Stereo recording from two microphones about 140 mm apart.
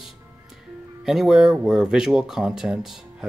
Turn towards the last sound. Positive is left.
turn(degrees=-5)  # may be behind; listen again after turning